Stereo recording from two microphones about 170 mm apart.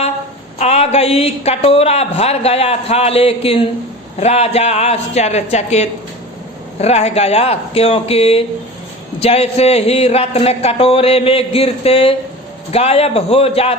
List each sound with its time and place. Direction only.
0.6 s a man's voice: 40° left (ahead or behind)